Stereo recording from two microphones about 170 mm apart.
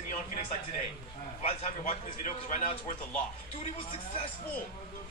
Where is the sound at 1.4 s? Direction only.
45° left (ahead or behind).